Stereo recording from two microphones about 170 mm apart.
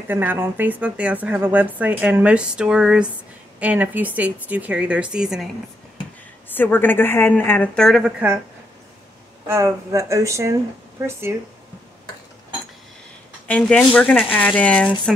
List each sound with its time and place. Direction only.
0.1 s speech: 10° right (ahead or behind)
6.5 s a woman's voice: 10° left (ahead or behind); by 8.4 s 5° right (ahead or behind)
9.5 s speech: 15° right (ahead or behind)
13.5 s a woman's voice: 5° left (ahead or behind)
15.1 s stir: centre (ahead or behind)